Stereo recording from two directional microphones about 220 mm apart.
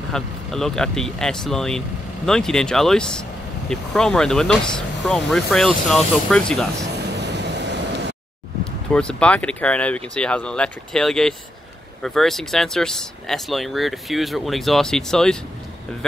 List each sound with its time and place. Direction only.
0.1 s speech: centre (ahead or behind)
7.2 s vehicle: 50° right (ahead or behind)
8.9 s speech: 5° left (ahead or behind)